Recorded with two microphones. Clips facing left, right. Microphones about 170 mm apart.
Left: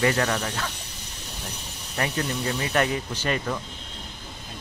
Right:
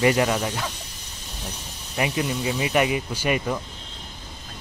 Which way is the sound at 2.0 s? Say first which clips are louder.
Right 3 dB; 10° right (ahead or behind).